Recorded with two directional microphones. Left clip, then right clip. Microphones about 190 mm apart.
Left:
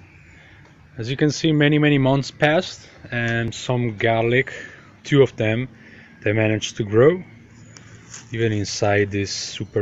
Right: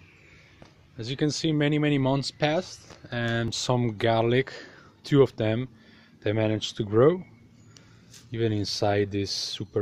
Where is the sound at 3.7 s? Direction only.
30° right (ahead or behind).